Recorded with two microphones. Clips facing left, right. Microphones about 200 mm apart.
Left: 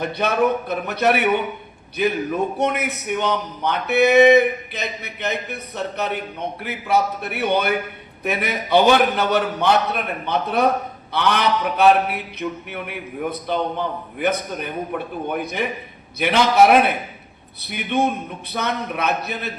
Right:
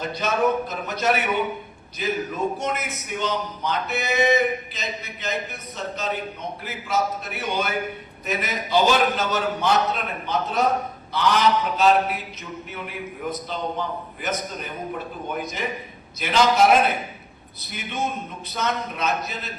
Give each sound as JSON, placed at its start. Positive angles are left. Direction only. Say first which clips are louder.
{"t": 0.0, "sound": "speech", "louder": "left 3 dB", "side_deg": 60}